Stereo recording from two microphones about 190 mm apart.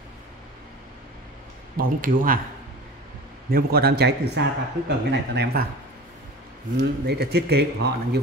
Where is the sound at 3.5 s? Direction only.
55° right (ahead or behind).